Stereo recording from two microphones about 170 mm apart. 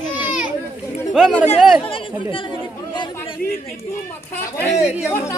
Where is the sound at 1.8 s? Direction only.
30° left (ahead or behind).